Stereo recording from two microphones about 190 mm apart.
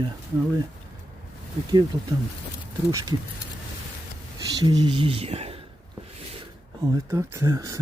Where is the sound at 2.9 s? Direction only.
20° right (ahead or behind).